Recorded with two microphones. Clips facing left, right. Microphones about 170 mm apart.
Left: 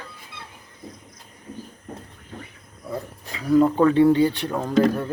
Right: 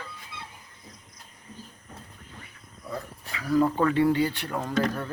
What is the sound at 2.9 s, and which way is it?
Speech, 25° left (ahead or behind).